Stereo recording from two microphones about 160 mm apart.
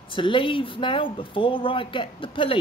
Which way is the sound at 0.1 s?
30° left (ahead or behind).